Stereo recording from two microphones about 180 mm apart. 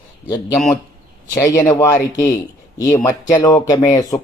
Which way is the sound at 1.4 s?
15° left (ahead or behind).